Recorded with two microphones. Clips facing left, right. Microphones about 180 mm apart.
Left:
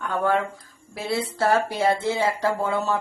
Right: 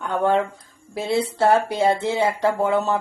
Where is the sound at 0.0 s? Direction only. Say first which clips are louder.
Right 3 dB; 25° right (ahead or behind).